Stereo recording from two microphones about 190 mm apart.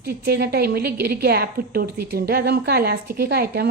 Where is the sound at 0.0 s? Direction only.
55° right (ahead or behind).